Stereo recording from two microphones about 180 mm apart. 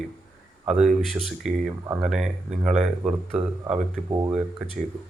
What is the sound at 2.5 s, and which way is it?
Speech, 35° right (ahead or behind).